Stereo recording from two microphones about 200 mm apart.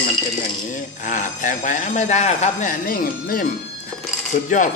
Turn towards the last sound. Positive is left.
turn(degrees=40)  # may be behind; listen again after turning